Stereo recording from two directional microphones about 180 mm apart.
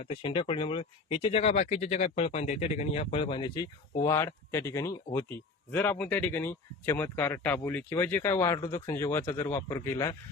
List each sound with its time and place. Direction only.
0.0 s speech: 30° left (ahead or behind); by 10.2 s 15° left (ahead or behind)